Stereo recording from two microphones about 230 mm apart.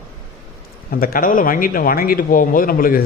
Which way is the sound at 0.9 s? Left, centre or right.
Left.